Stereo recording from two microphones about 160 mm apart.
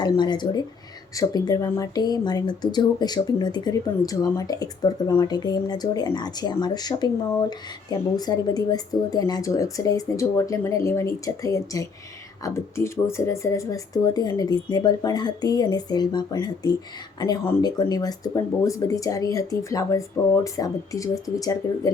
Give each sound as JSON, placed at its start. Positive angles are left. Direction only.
{"t": 0.0, "sound": "speech", "side_deg": 30}